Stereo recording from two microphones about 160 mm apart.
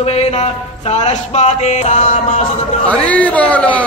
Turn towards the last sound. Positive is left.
turn(degrees=10)  # may be behind; listen again after turning